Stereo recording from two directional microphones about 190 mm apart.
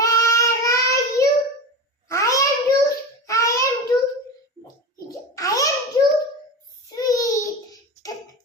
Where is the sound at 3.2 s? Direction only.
15° left (ahead or behind).